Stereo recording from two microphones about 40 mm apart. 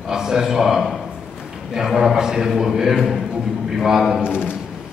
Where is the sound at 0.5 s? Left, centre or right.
Centre.